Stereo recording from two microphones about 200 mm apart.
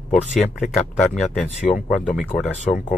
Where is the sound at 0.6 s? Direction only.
Centre (ahead or behind).